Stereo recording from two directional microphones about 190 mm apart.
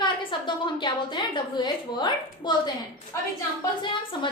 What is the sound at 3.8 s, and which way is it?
Speech, 25° left (ahead or behind).